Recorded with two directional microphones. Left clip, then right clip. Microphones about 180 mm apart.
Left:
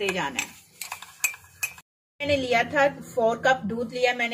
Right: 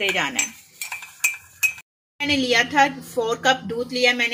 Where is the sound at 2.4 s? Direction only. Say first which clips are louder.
Right 5 dB; 40° right (ahead or behind).